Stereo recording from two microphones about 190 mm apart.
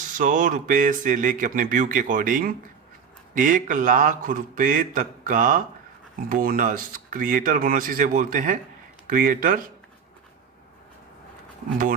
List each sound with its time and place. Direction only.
0.0 s speech: 45° right (ahead or behind)